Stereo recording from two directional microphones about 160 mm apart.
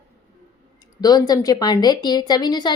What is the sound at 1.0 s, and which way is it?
A woman's voice, 25° left (ahead or behind).